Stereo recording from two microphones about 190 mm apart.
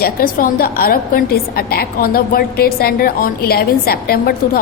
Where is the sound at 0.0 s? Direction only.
50° left (ahead or behind).